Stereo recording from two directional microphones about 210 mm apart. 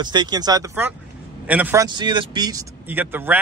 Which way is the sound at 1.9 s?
20° right (ahead or behind).